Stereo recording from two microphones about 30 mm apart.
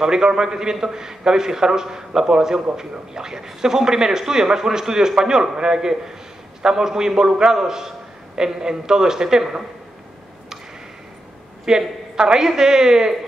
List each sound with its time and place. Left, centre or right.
0.0 s a man's voice: right
11.7 s a man's voice: right